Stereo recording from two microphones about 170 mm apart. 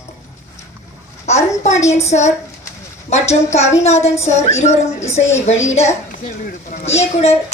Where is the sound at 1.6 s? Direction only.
40° left (ahead or behind).